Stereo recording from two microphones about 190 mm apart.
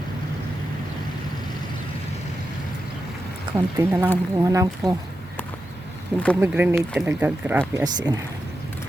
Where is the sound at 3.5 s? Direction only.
10° right (ahead or behind).